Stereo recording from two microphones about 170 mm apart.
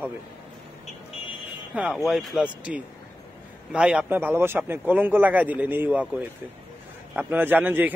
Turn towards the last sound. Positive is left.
turn(degrees=-10)  # may be behind; listen again after turning